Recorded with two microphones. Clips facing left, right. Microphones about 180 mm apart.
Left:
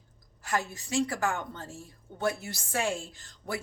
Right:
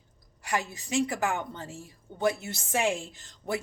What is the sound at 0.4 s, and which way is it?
A woman's voice, 15° right (ahead or behind).